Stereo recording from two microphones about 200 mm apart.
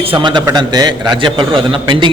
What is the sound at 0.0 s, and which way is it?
A man's voice, 25° right (ahead or behind).